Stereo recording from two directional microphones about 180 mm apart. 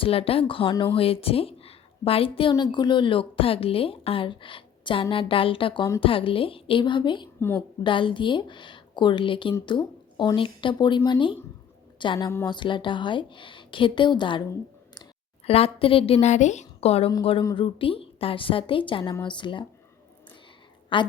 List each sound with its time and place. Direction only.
0.0 s a woman's voice: 30° left (ahead or behind)
15.4 s a woman's voice: 35° left (ahead or behind)
20.9 s a woman's voice: 30° left (ahead or behind)